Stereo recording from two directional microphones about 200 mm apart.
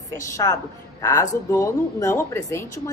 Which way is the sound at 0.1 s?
15° left (ahead or behind).